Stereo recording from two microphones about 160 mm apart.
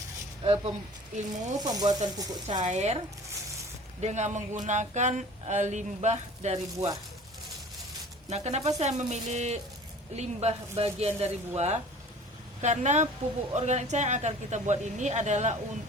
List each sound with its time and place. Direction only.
0.4 s speech: 30° right (ahead or behind)
1.1 s speech: 50° right (ahead or behind)
1.6 s speech: 25° right (ahead or behind)
2.5 s speech: 50° right (ahead or behind)
4.0 s speech: 45° right (ahead or behind)
6.7 s speech: 25° right (ahead or behind)
8.3 s speech: 45° right (ahead or behind)